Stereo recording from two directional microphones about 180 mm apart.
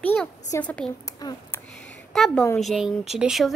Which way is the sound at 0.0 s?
5° left (ahead or behind).